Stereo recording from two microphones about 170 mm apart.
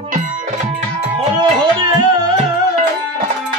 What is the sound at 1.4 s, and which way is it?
Music, 25° right (ahead or behind).